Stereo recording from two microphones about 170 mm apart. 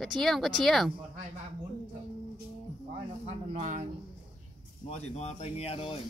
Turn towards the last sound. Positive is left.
turn(degrees=35)  # may be behind; listen again after turning